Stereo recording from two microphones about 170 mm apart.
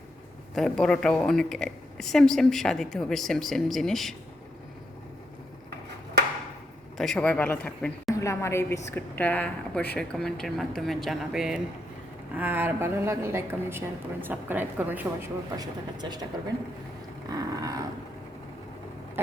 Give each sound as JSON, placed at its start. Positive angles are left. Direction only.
{"t": 0.5, "sound": "a woman's voice", "side_deg": 0}
{"t": 6.9, "sound": "a woman's voice", "side_deg": 0}
{"t": 15.5, "sound": "speech", "side_deg": -25}
{"t": 17.2, "sound": "a sound", "side_deg": -20}